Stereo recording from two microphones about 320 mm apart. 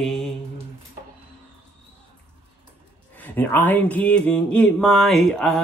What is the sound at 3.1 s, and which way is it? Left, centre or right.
Speech, centre.